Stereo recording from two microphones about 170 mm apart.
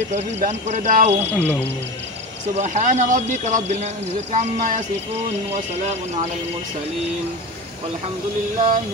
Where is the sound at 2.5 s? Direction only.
40° right (ahead or behind).